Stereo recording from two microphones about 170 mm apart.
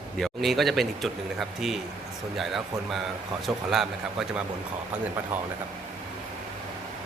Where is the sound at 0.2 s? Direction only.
Centre (ahead or behind).